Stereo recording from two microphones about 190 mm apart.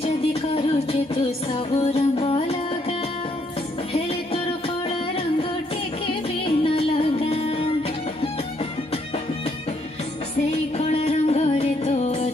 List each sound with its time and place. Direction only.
0.0 s music: 30° left (ahead or behind)
1.8 s music: 30° left (ahead or behind)
3.9 s music: 30° left (ahead or behind)
6.4 s music: 30° left (ahead or behind)
10.8 s music: 35° left (ahead or behind)